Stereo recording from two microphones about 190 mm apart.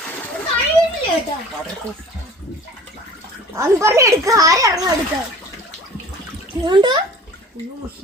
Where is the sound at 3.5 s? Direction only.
15° right (ahead or behind).